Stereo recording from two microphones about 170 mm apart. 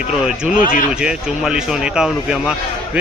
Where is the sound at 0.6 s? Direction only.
50° left (ahead or behind).